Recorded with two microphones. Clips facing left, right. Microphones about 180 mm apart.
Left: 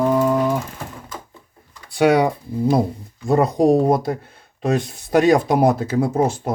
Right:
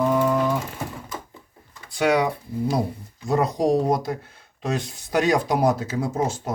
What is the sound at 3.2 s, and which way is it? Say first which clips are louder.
Speech: left 5 dB; 55° left (ahead or behind).